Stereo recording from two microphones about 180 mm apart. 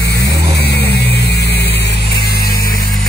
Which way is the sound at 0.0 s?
65° left (ahead or behind).